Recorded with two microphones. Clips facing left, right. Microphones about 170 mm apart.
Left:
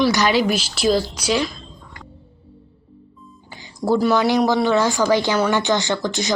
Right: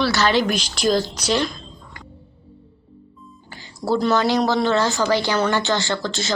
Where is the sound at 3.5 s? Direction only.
15° left (ahead or behind).